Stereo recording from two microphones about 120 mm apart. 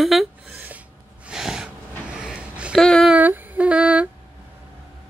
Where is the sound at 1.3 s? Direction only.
5° right (ahead or behind).